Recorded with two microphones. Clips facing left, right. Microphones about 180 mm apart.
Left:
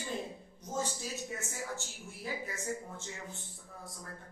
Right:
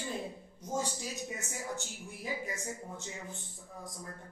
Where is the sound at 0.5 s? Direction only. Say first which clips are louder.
Right 1 dB; 15° right (ahead or behind).